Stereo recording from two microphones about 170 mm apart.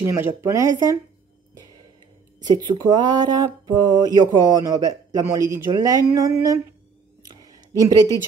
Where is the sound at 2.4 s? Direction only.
25° right (ahead or behind).